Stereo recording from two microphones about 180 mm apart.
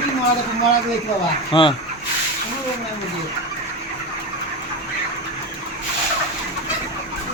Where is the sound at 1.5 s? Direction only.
25° left (ahead or behind).